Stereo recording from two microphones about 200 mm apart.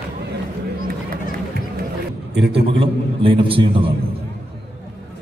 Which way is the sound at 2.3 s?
55° right (ahead or behind).